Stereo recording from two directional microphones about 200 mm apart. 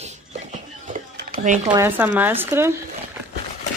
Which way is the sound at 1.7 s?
10° right (ahead or behind).